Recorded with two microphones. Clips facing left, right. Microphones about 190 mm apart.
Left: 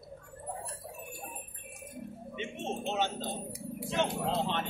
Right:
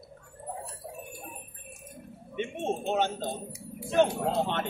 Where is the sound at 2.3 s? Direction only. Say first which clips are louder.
Right 6 dB; 55° right (ahead or behind).